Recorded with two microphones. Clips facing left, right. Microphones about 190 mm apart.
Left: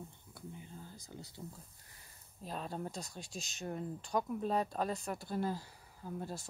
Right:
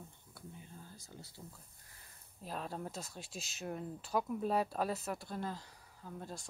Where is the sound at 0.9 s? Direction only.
20° left (ahead or behind).